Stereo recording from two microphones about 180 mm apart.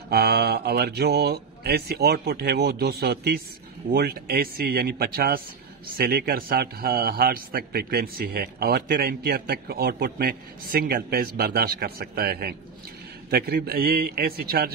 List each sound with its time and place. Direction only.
0.1 s a man's voice: 60° right (ahead or behind)